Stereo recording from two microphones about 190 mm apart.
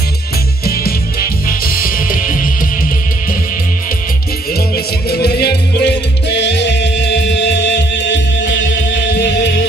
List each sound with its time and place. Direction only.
1.5 s music: 50° left (ahead or behind)
4.6 s music: 55° left (ahead or behind)